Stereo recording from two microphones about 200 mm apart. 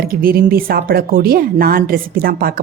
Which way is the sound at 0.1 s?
45° right (ahead or behind).